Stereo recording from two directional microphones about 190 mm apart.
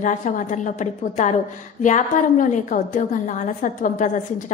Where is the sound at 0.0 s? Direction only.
40° left (ahead or behind).